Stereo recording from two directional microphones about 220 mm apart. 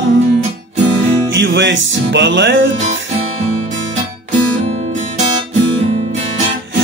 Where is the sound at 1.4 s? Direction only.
55° right (ahead or behind).